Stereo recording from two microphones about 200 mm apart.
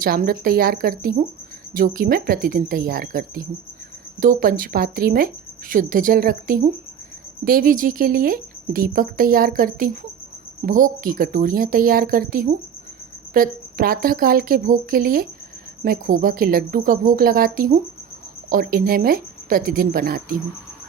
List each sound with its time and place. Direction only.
0.0 s speech: 45° right (ahead or behind)